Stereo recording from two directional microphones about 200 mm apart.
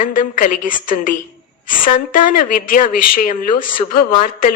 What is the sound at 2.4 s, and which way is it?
Speech, 45° left (ahead or behind).